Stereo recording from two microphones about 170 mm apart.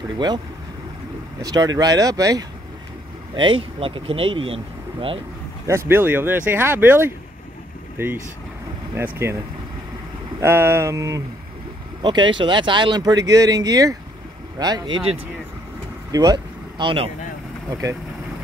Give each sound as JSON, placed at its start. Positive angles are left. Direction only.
{"t": 1.4, "sound": "speech", "side_deg": -20}
{"t": 5.7, "sound": "speech", "side_deg": -15}
{"t": 10.4, "sound": "speech", "side_deg": -15}
{"t": 16.1, "sound": "speech", "side_deg": -20}
{"t": 17.6, "sound": "speech", "side_deg": -20}